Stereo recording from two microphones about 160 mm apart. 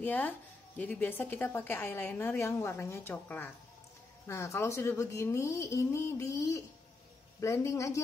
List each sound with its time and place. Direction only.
0.0 s a woman's voice: 10° left (ahead or behind)